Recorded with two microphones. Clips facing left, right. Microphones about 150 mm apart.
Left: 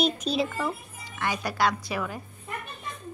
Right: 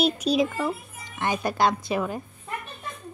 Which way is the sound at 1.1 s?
20° right (ahead or behind).